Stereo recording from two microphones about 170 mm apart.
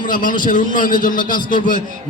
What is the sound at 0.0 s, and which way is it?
A man's voice, 55° left (ahead or behind).